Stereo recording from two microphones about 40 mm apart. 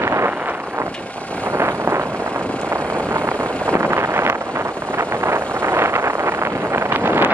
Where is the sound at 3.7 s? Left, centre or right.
Right.